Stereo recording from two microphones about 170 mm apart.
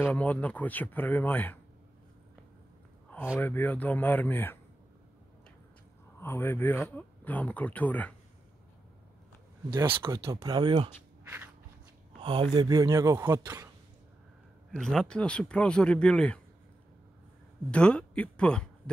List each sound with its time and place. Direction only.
0.0 s speech: 10° left (ahead or behind)
3.3 s speech: 10° left (ahead or behind)
6.1 s speech: 15° left (ahead or behind)
9.7 s speech: 25° right (ahead or behind)
11.2 s a sound: 10° right (ahead or behind)
12.2 s speech: 30° right (ahead or behind); by 13.7 s 15° right (ahead or behind)
14.7 s speech: 5° left (ahead or behind)
17.6 s speech: 5° left (ahead or behind)